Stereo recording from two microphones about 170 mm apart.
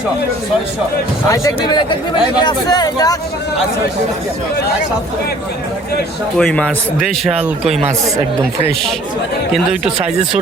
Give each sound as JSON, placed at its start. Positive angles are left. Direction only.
{"t": 1.3, "sound": "speech", "side_deg": 20}
{"t": 6.3, "sound": "a man's voice", "side_deg": 5}
{"t": 9.5, "sound": "a man's voice", "side_deg": 0}